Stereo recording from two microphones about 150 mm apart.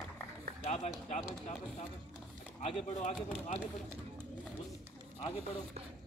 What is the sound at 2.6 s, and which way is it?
Speech, 45° left (ahead or behind).